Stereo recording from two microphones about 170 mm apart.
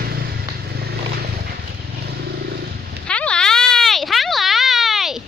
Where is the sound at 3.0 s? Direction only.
5° left (ahead or behind).